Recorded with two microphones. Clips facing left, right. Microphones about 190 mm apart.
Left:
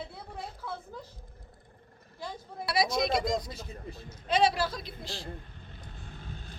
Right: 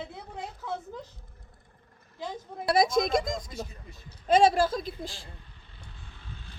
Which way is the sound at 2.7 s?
50° right (ahead or behind).